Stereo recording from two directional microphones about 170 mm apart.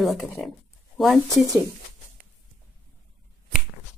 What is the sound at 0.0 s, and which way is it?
Speech, centre (ahead or behind).